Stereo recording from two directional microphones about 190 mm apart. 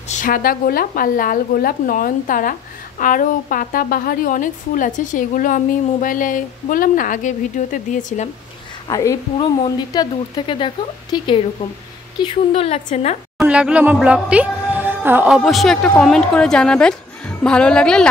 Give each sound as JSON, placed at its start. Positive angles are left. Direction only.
{"t": 0.1, "sound": "a woman's voice", "side_deg": 45}
{"t": 8.8, "sound": "a woman's voice", "side_deg": 15}
{"t": 13.4, "sound": "speech", "side_deg": -5}